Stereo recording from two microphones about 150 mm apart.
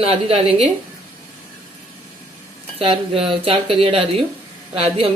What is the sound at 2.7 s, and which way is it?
A woman's voice, 40° right (ahead or behind).